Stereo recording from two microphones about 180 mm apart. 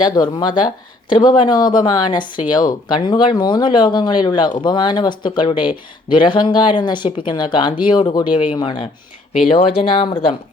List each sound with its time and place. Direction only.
0.2 s speech: 25° left (ahead or behind)